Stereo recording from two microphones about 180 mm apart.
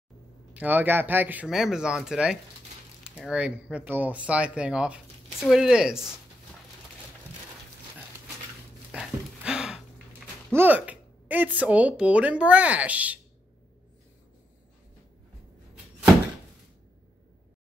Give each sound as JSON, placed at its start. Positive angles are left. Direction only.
{"t": 0.6, "sound": "speech", "side_deg": -10}
{"t": 8.9, "sound": "a sound", "side_deg": -5}
{"t": 10.5, "sound": "speech", "side_deg": -10}